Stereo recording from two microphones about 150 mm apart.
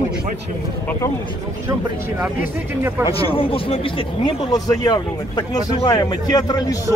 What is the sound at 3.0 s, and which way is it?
A man's voice, 35° left (ahead or behind).